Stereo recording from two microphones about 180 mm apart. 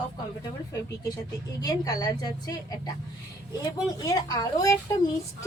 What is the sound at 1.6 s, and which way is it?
A woman's voice, 20° left (ahead or behind).